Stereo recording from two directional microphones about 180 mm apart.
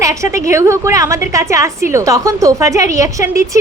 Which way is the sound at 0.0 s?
15° right (ahead or behind).